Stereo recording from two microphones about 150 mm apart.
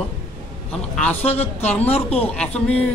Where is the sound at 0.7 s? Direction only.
10° left (ahead or behind).